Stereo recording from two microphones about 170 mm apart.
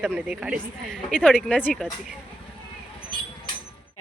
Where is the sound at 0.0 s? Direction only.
5° right (ahead or behind).